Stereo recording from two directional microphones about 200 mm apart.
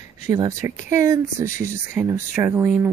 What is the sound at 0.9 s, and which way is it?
Speech, 15° right (ahead or behind).